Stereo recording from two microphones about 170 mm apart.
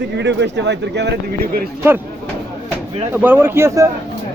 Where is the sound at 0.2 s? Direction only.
90° right.